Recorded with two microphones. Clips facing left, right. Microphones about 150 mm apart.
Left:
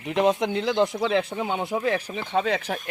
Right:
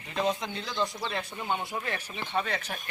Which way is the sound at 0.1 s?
75° left (ahead or behind).